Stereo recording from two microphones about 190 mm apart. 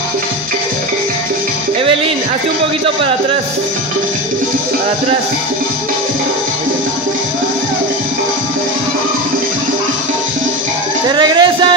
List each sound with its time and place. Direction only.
11.1 s music: 25° right (ahead or behind)